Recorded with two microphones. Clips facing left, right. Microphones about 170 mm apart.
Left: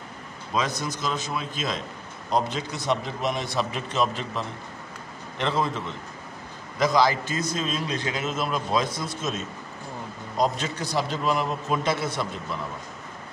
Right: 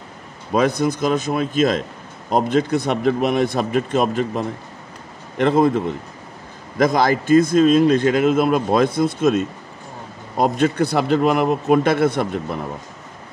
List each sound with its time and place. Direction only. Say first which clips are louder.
0.5 s a man's voice: right 10 dB; 55° right (ahead or behind)